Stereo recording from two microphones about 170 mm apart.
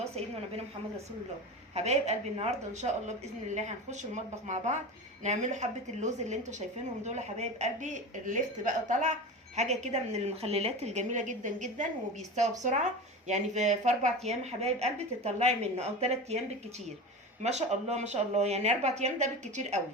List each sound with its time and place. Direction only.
0.0 s a woman's voice: 40° right (ahead or behind)
1.7 s speech: 40° right (ahead or behind)
17.4 s speech: 40° right (ahead or behind)